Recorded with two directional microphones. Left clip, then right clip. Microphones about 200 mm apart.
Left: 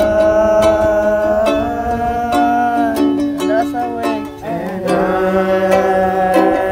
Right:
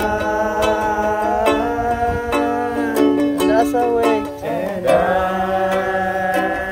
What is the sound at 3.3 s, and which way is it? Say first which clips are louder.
Music: even; 30° right (ahead or behind).